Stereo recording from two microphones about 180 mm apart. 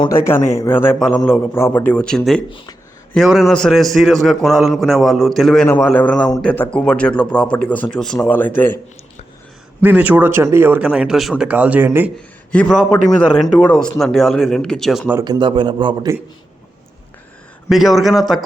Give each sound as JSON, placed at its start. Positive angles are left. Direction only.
{"t": 0.2, "sound": "a man's voice", "side_deg": 15}
{"t": 9.8, "sound": "speech", "side_deg": -10}
{"t": 12.5, "sound": "a man's voice", "side_deg": 5}
{"t": 15.2, "sound": "a man's voice", "side_deg": -25}
{"t": 17.7, "sound": "a man's voice", "side_deg": 0}